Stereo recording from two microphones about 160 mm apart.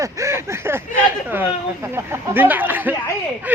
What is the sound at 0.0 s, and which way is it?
Speech, 20° right (ahead or behind).